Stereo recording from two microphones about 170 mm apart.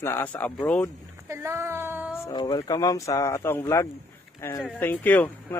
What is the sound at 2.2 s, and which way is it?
Speech, 25° left (ahead or behind).